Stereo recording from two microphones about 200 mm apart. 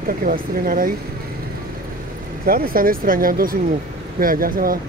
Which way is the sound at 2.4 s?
50° right (ahead or behind).